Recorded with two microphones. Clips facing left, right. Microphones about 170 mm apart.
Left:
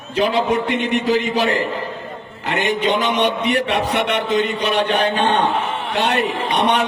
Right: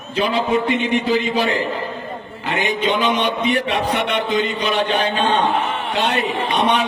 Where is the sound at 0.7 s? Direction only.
75° left (ahead or behind).